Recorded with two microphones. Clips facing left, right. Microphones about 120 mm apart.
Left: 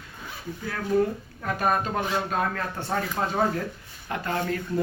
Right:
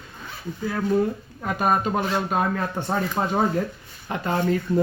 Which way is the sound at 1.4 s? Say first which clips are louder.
Right 3 dB; 20° right (ahead or behind).